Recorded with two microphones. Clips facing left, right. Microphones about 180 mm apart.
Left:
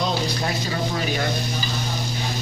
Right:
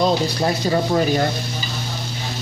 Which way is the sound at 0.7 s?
40° right (ahead or behind).